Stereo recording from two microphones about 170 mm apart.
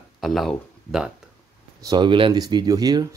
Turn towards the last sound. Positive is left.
turn(degrees=-20)  # may be behind; listen again after turning